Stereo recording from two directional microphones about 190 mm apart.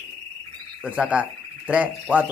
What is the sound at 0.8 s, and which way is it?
Speech, 5° right (ahead or behind).